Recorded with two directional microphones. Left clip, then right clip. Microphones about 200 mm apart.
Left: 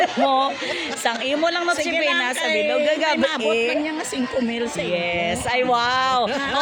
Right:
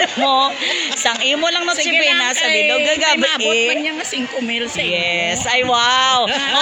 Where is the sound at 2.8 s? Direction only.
10° right (ahead or behind).